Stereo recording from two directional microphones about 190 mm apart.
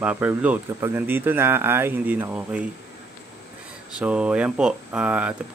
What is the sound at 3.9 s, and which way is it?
Speech, 5° right (ahead or behind).